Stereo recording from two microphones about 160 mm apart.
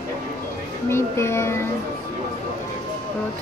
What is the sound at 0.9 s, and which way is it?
Music, 15° left (ahead or behind).